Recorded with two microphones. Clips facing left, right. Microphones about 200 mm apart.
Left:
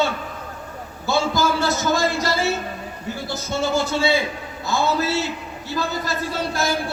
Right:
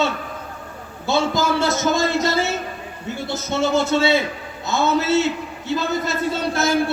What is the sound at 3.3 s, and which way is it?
Speech, 20° right (ahead or behind).